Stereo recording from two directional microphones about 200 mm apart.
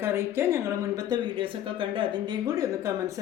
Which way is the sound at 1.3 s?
25° right (ahead or behind).